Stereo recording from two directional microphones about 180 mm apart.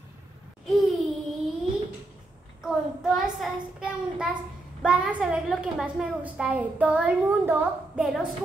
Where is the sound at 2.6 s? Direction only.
5° right (ahead or behind).